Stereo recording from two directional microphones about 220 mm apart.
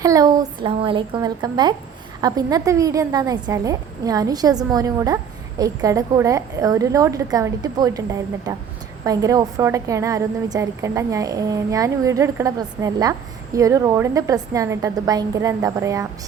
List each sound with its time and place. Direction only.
0.0 s a woman's voice: 15° right (ahead or behind)